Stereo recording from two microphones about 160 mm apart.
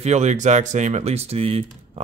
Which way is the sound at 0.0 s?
45° right (ahead or behind).